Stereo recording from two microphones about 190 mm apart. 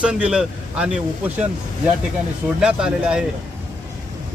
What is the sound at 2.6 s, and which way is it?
Speech, 5° right (ahead or behind).